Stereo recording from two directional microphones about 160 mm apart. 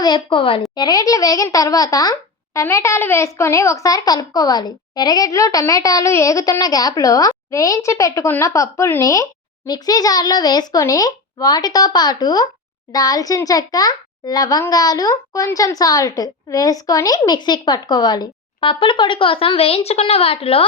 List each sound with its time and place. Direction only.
0.0 s a woman's voice: 30° left (ahead or behind)